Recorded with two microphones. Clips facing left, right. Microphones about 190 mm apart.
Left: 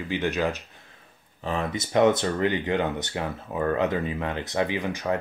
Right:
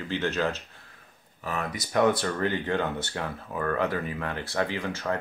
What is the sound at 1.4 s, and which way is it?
Speech, 25° left (ahead or behind).